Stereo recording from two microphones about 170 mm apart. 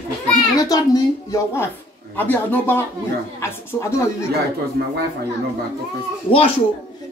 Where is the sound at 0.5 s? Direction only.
20° left (ahead or behind).